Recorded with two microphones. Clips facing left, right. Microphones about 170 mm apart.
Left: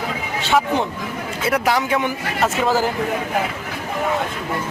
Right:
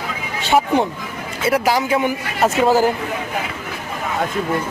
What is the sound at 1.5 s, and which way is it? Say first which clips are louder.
A man's voice: right 2 dB; 5° right (ahead or behind).